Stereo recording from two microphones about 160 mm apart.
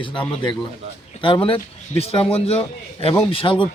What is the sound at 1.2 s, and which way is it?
A man's voice, 35° left (ahead or behind).